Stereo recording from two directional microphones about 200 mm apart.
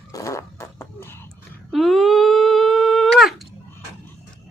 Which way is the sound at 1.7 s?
Centre (ahead or behind).